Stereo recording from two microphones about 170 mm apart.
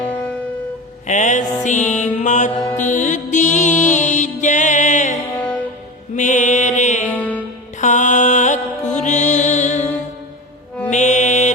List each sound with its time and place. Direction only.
0.0 s music: 10° left (ahead or behind)
1.0 s music: 45° left (ahead or behind)
6.1 s mantra: 45° left (ahead or behind)
7.1 s music: 10° left (ahead or behind)
7.8 s music: 45° left (ahead or behind)